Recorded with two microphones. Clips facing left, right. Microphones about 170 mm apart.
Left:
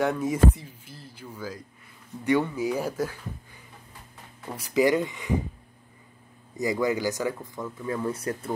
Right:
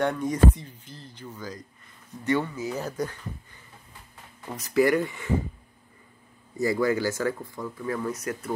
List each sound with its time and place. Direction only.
0.0 s speech: 5° left (ahead or behind)
4.5 s speech: 10° left (ahead or behind)
6.6 s speech: 15° left (ahead or behind)